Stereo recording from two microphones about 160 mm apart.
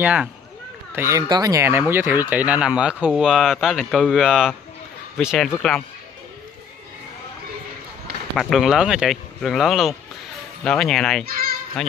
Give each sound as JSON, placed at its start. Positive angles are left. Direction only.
{"t": 0.0, "sound": "speech", "side_deg": -5}
{"t": 0.9, "sound": "speech", "side_deg": -20}
{"t": 8.4, "sound": "speech", "side_deg": 0}
{"t": 11.2, "sound": "a child's voice", "side_deg": -65}